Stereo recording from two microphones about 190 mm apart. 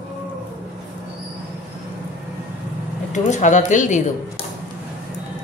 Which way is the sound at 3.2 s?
40° left (ahead or behind).